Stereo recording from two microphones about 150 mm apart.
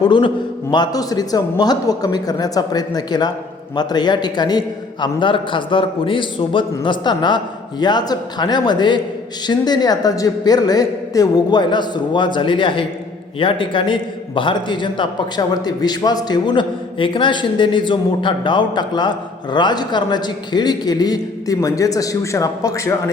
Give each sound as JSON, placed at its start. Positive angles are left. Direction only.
{"t": 0.0, "sound": "a man's voice", "side_deg": 30}